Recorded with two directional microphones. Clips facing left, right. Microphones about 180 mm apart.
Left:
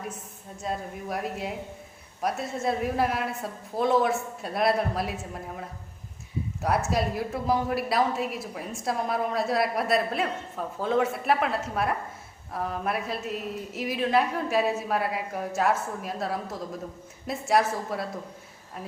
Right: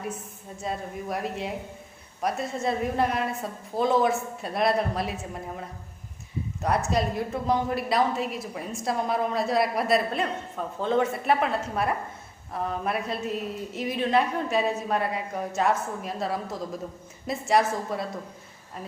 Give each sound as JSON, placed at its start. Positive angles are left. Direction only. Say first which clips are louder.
{"t": 0.6, "sound": "a woman's voice", "louder": "even", "side_deg": 0}